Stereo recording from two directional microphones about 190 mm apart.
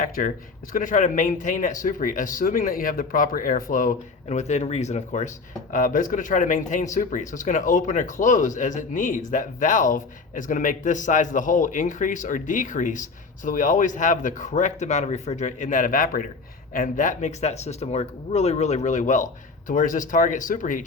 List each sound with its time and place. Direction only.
0.2 s speech: 45° left (ahead or behind)